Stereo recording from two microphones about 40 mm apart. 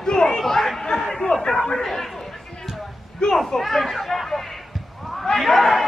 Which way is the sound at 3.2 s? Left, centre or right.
Left.